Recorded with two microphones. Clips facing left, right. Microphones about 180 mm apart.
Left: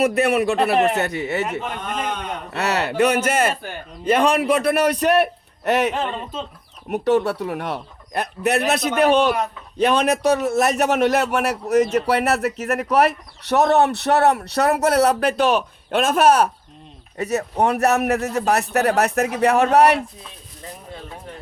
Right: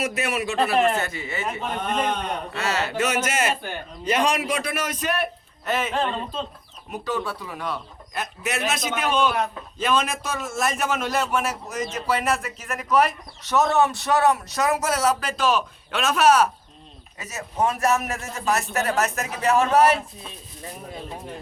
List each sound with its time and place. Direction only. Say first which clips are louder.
0.0 s a man's voice: left 8 dB; 60° left (ahead or behind)
6.0 s speech: even; 10° left (ahead or behind)
6.8 s a man's voice: left 10 dB; 65° left (ahead or behind)